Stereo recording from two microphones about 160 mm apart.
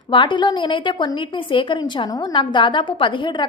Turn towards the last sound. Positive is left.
turn(degrees=30)  # may be behind; listen again after turning